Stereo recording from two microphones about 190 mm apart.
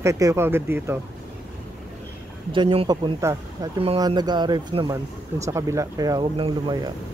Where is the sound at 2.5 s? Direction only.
25° right (ahead or behind).